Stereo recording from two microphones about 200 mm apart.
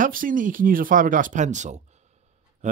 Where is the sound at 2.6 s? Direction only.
35° right (ahead or behind).